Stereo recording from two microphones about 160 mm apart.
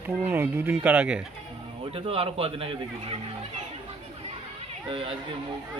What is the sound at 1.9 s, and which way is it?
Speech, 35° right (ahead or behind).